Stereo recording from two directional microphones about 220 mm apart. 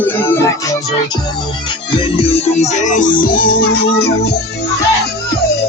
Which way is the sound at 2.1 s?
25° left (ahead or behind).